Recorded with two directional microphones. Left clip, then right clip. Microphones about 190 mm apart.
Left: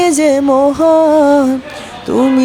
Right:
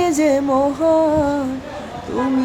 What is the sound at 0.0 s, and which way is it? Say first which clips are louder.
Music: left 6 dB; 45° left (ahead or behind).